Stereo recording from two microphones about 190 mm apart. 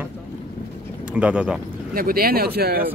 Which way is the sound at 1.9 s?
50° right (ahead or behind).